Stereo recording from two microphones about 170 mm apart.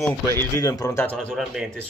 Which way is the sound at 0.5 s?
20° left (ahead or behind).